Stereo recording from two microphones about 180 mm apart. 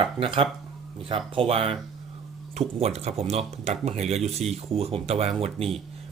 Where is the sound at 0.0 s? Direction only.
30° right (ahead or behind).